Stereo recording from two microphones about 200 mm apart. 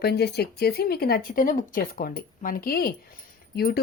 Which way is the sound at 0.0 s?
55° left (ahead or behind).